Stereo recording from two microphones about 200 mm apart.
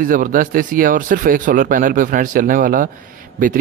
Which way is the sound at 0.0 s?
45° right (ahead or behind).